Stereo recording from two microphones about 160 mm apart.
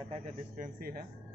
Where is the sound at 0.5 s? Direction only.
60° right (ahead or behind).